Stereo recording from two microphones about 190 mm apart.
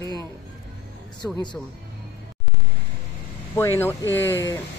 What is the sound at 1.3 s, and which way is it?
Speech, 25° left (ahead or behind).